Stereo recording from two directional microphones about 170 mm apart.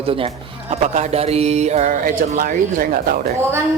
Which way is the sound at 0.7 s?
40° right (ahead or behind).